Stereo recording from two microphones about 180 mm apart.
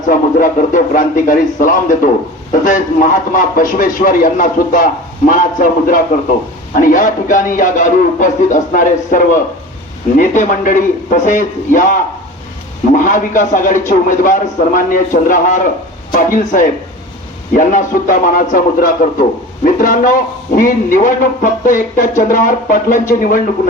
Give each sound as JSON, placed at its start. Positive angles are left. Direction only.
{"t": 0.1, "sound": "speech", "side_deg": 50}